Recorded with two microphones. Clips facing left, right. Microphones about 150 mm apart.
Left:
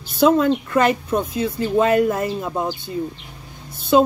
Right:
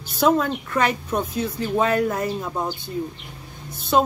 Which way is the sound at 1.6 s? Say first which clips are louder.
Left 4 dB; 50° left (ahead or behind).